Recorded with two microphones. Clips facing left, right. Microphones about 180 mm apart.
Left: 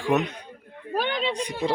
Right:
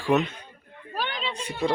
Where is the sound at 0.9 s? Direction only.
55° left (ahead or behind).